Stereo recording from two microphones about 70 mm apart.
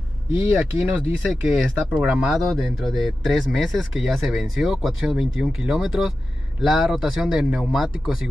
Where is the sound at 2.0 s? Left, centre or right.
Centre.